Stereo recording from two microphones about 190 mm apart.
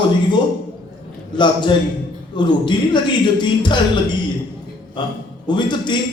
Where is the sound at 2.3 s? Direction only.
25° left (ahead or behind).